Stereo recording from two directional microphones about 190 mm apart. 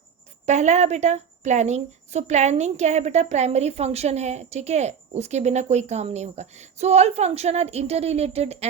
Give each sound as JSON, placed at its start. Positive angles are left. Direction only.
{"t": 0.4, "sound": "a woman's voice", "side_deg": -35}